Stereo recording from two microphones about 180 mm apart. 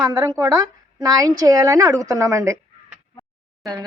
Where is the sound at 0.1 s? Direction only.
20° right (ahead or behind).